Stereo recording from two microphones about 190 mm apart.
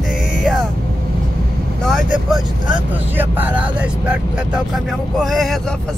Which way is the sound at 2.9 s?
10° right (ahead or behind).